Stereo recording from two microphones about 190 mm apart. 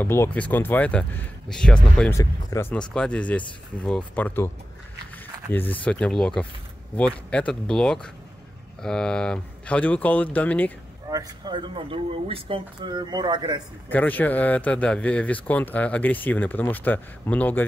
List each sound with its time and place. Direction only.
0.0 s speech: 10° left (ahead or behind)
5.5 s speech: 10° left (ahead or behind)
11.1 s speech: 20° right (ahead or behind)
13.8 s speech: 10° left (ahead or behind)